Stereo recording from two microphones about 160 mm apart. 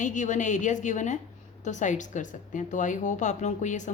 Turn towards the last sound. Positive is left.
turn(degrees=50)  # may be behind; listen again after turning